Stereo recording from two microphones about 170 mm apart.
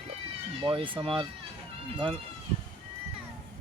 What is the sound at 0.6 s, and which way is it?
Speech, 30° right (ahead or behind).